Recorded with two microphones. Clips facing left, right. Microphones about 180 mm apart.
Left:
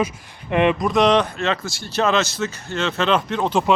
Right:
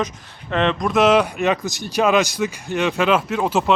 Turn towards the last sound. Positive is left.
turn(degrees=-5)  # may be behind; listen again after turning